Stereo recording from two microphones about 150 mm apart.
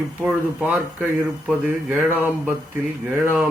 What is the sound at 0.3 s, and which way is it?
A man's voice, 5° right (ahead or behind).